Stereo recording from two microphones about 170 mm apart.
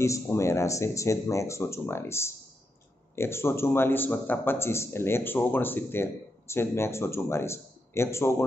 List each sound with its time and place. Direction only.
0.0 s speech: 15° left (ahead or behind)